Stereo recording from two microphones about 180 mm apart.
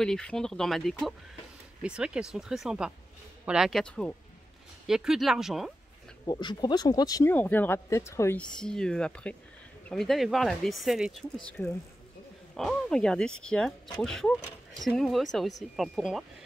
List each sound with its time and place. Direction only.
0.0 s speech: 5° left (ahead or behind)
6.2 s speech: 20° left (ahead or behind)
7.3 s speech: 10° left (ahead or behind)